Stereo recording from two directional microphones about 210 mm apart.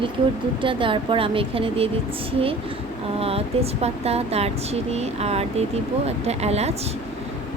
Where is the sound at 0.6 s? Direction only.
25° right (ahead or behind).